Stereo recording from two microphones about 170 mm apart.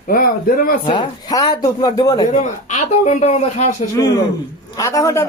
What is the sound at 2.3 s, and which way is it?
Speech, 45° left (ahead or behind).